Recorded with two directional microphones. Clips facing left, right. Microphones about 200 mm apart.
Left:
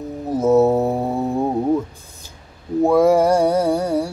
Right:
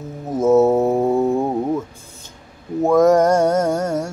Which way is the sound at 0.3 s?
10° left (ahead or behind).